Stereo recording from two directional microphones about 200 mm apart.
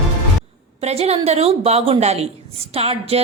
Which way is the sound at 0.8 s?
30° right (ahead or behind).